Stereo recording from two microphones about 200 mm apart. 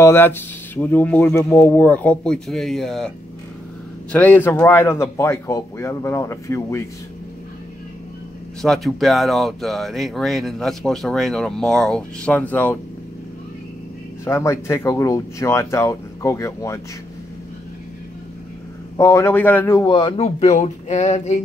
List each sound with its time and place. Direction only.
0.0 s speech: 10° left (ahead or behind)
4.1 s speech: 10° left (ahead or behind)
8.6 s speech: centre (ahead or behind)
14.2 s speech: 15° left (ahead or behind)
18.9 s speech: 15° left (ahead or behind); by 21.4 s 35° left (ahead or behind)